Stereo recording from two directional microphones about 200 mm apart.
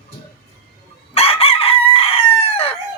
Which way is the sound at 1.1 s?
30° left (ahead or behind).